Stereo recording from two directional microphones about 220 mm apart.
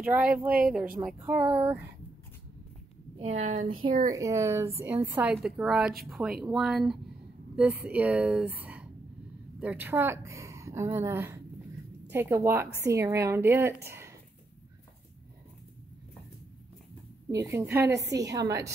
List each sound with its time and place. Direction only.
0.0 s a woman's voice: 5° right (ahead or behind)
3.2 s a woman's voice: 30° right (ahead or behind)
4.1 s a woman's voice: 15° right (ahead or behind)
13.8 s a sound: 10° right (ahead or behind)
17.3 s a woman's voice: 15° right (ahead or behind)